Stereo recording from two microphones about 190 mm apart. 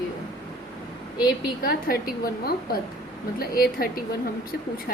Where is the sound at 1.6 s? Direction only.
50° left (ahead or behind).